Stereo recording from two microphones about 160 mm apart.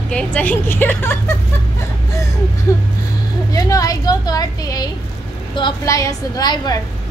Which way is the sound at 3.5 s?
20° left (ahead or behind).